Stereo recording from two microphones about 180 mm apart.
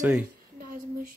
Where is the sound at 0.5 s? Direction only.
50° right (ahead or behind).